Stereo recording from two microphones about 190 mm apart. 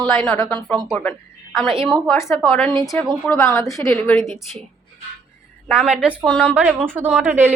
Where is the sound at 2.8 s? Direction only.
15° left (ahead or behind).